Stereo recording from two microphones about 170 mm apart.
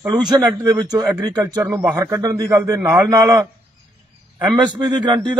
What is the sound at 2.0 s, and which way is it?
A man's voice, 20° right (ahead or behind).